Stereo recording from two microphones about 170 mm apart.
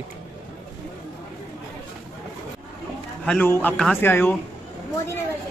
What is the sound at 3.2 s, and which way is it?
Speech, 10° left (ahead or behind).